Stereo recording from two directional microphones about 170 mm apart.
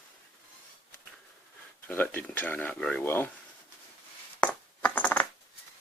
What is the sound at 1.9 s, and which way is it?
Speech, 10° left (ahead or behind).